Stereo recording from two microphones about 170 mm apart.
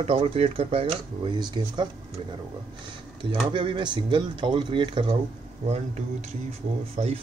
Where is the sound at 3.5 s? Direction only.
30° right (ahead or behind).